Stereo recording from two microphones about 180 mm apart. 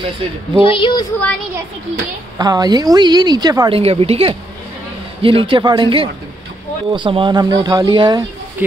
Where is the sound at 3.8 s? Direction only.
35° right (ahead or behind).